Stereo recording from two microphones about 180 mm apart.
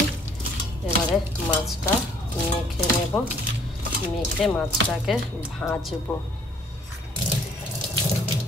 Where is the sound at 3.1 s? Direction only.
10° left (ahead or behind).